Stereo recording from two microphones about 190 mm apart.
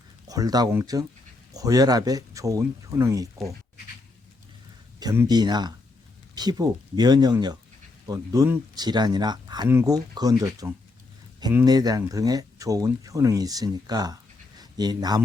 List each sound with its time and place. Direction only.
0.3 s speech: 20° right (ahead or behind)
4.9 s speech: 20° right (ahead or behind)